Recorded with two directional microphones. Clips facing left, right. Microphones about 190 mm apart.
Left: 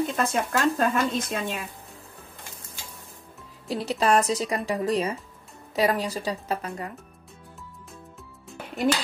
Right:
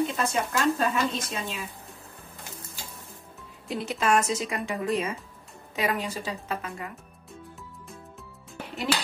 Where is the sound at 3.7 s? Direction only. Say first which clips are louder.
Left 2 dB; 35° left (ahead or behind).